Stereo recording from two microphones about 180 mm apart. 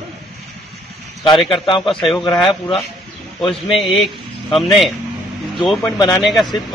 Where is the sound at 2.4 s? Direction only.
25° left (ahead or behind).